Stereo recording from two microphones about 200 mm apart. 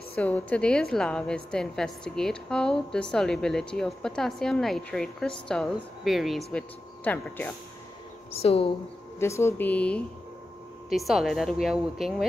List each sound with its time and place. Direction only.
0.2 s a woman's voice: 5° left (ahead or behind)
7.1 s speech: 10° left (ahead or behind)
8.4 s speech: 30° left (ahead or behind)
9.2 s a woman's voice: 10° left (ahead or behind)